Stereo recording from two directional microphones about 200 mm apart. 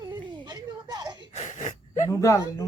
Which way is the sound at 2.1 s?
15° left (ahead or behind).